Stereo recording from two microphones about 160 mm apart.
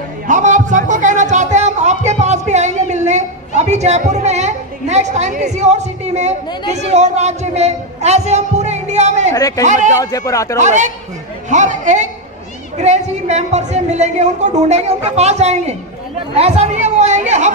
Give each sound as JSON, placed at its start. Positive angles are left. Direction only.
{"t": 0.3, "sound": "a sound", "side_deg": -50}
{"t": 6.7, "sound": "a woman's voice", "side_deg": -45}
{"t": 9.3, "sound": "speech", "side_deg": 20}
{"t": 9.7, "sound": "a woman's voice", "side_deg": -50}
{"t": 9.9, "sound": "speech", "side_deg": 20}
{"t": 10.6, "sound": "a woman's voice", "side_deg": -50}
{"t": 16.3, "sound": "chatter", "side_deg": -40}